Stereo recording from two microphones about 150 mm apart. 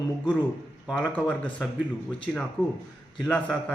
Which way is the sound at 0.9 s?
10° left (ahead or behind).